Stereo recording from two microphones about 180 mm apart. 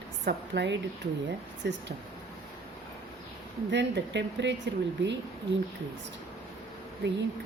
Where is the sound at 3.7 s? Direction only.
75° right (ahead or behind).